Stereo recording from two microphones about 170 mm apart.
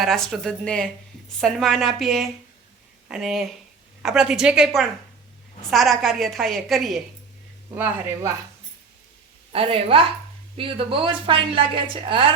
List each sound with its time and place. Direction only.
0.0 s a woman's voice: centre (ahead or behind)
7.7 s speech: 15° right (ahead or behind)
9.5 s a woman's voice: 35° right (ahead or behind)